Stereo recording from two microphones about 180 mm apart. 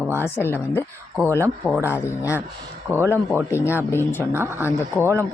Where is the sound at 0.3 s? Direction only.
10° left (ahead or behind).